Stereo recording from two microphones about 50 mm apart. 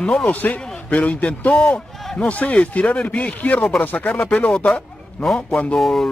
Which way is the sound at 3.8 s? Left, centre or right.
Left.